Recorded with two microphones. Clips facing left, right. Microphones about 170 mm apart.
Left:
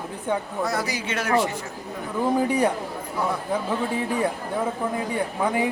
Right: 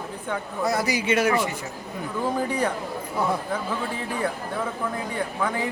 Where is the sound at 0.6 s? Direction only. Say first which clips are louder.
Right 3 dB; 10° right (ahead or behind).